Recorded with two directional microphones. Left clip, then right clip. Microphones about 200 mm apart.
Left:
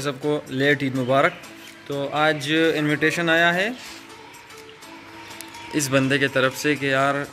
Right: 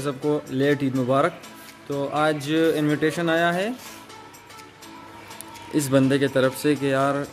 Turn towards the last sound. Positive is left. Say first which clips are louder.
# left 1 dB
turn(degrees=-20)  # may be behind; listen again after turning